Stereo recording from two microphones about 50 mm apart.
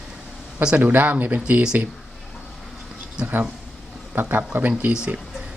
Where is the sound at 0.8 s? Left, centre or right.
Right.